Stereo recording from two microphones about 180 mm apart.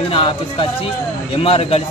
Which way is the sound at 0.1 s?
30° left (ahead or behind).